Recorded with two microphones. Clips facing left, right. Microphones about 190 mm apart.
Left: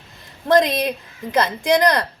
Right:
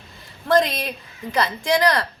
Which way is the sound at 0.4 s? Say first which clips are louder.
Left 3 dB; 20° left (ahead or behind).